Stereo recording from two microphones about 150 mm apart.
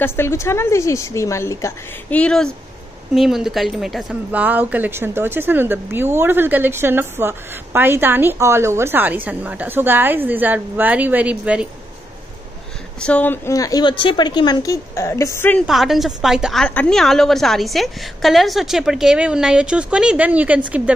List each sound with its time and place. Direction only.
0.0 s a woman's voice: 15° left (ahead or behind)
2.1 s a woman's voice: 5° left (ahead or behind)
13.0 s a woman's voice: 10° left (ahead or behind)
15.6 s a woman's voice: centre (ahead or behind)
16.6 s a woman's voice: 10° left (ahead or behind); by 20.9 s 10° right (ahead or behind)